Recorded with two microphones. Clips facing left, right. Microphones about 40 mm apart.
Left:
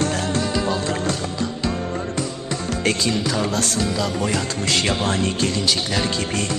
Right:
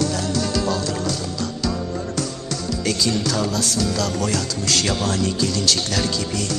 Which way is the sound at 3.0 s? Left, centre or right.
Left.